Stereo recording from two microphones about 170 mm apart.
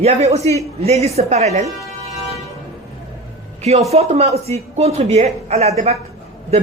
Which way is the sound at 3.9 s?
40° right (ahead or behind).